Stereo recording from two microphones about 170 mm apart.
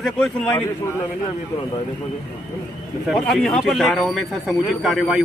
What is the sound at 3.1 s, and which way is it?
Speech, 5° left (ahead or behind).